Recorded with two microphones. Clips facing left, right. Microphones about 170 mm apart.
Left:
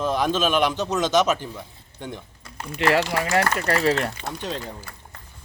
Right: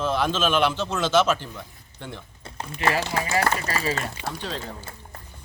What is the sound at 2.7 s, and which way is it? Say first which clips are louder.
Speech: left 4 dB; 70° left (ahead or behind).